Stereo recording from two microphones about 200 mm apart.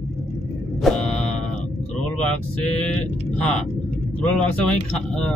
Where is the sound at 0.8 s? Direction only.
5° left (ahead or behind).